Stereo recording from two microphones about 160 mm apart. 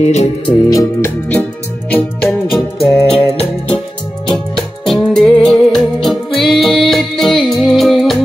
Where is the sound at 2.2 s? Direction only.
Centre (ahead or behind).